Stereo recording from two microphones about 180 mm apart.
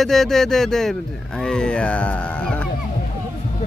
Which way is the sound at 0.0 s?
Centre (ahead or behind).